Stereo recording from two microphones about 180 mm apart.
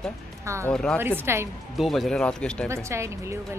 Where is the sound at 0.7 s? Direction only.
5° left (ahead or behind).